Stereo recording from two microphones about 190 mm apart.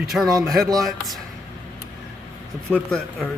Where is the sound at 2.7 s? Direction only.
Centre (ahead or behind).